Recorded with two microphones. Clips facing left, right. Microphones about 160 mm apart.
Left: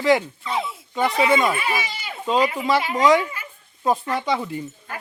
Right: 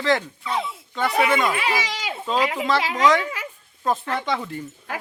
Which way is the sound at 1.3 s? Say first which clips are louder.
Left 2 dB; 15° left (ahead or behind).